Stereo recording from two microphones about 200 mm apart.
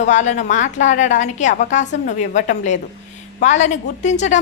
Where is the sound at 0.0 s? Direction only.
35° left (ahead or behind).